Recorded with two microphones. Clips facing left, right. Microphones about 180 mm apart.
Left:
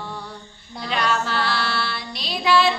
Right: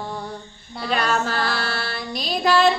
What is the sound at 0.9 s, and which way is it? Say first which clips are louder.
Music: right 1 dB; 45° right (ahead or behind).